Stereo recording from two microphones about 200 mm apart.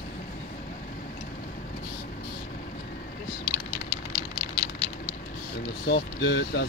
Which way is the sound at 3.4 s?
50° left (ahead or behind).